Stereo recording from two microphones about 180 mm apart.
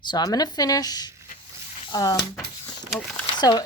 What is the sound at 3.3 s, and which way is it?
Speech, 20° left (ahead or behind).